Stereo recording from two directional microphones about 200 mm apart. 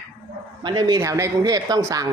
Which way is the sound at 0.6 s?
20° right (ahead or behind).